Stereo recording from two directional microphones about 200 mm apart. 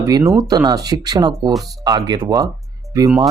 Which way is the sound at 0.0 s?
15° right (ahead or behind).